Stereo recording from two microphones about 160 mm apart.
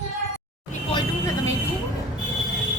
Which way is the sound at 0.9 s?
25° left (ahead or behind).